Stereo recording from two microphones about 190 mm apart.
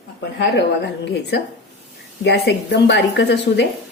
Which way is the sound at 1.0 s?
60° left (ahead or behind).